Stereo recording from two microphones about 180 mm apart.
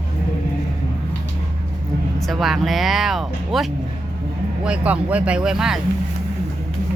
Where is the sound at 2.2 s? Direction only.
Centre (ahead or behind).